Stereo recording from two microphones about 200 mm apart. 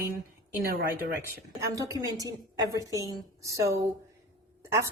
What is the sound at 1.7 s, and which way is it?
A woman's voice, 15° right (ahead or behind).